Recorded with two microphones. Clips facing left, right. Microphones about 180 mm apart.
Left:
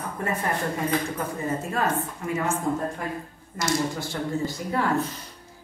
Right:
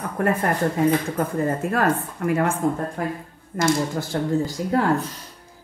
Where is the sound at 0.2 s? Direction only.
55° right (ahead or behind).